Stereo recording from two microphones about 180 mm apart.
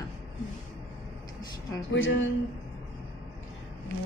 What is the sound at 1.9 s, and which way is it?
Speech, 90° left.